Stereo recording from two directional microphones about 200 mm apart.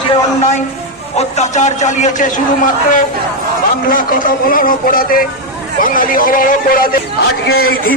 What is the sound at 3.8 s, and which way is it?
Speech, 45° left (ahead or behind).